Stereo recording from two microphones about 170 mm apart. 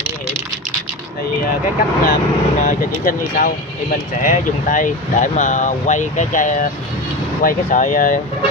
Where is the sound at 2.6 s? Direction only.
50° left (ahead or behind).